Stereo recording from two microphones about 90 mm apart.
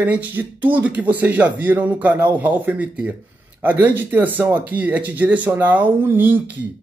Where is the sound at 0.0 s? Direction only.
20° right (ahead or behind).